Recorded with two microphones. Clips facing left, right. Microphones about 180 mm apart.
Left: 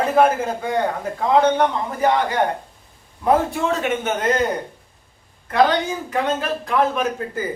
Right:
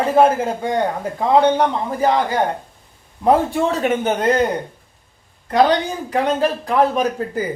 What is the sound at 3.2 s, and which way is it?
Speech, 35° right (ahead or behind).